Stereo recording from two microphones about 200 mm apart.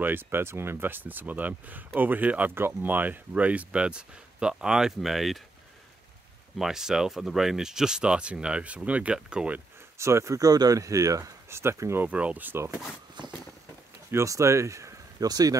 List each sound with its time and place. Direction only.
0.0 s speech: 10° right (ahead or behind)
6.6 s speech: centre (ahead or behind)
13.2 s a sound: 20° right (ahead or behind)
14.1 s speech: 15° right (ahead or behind)